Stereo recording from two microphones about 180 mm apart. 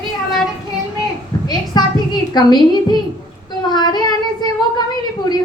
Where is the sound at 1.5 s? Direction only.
25° left (ahead or behind).